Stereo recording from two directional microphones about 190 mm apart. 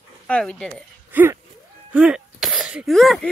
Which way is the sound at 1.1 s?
10° right (ahead or behind).